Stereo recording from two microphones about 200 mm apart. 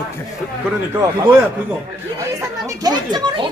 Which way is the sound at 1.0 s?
15° right (ahead or behind).